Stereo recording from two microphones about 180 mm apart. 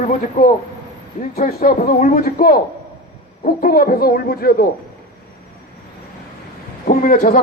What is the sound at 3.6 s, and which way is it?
Speech, 55° left (ahead or behind).